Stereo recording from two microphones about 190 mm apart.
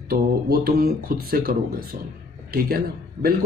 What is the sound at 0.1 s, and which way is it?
A man's voice, 50° right (ahead or behind).